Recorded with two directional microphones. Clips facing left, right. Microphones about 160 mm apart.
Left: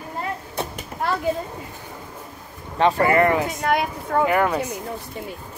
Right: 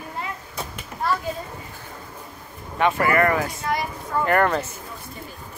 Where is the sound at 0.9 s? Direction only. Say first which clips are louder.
Left 1 dB; 30° left (ahead or behind).